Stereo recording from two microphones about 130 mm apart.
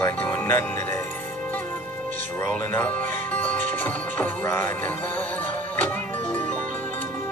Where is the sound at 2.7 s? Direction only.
15° left (ahead or behind).